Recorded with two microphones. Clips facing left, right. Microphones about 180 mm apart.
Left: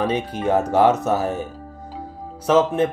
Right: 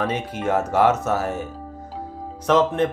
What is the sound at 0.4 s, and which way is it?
Speech, 15° left (ahead or behind).